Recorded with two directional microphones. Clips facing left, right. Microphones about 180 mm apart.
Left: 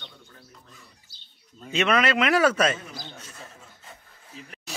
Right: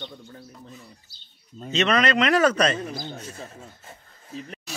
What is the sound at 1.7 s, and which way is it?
Speech, 10° left (ahead or behind).